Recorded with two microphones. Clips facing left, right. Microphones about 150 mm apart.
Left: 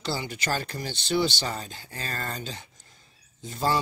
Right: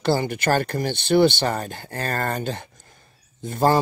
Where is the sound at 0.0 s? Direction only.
55° right (ahead or behind).